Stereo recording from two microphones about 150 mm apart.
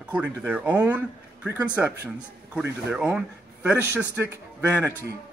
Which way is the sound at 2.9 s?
5° right (ahead or behind).